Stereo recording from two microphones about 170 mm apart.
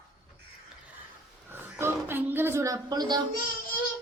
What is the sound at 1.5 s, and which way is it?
Speech, 15° right (ahead or behind).